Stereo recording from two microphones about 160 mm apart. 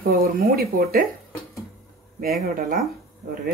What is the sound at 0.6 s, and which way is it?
Speech, 65° right (ahead or behind).